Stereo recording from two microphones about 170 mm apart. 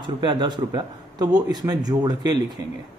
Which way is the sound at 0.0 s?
30° right (ahead or behind).